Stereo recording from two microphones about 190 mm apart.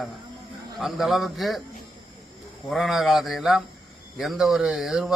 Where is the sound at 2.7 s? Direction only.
Centre (ahead or behind).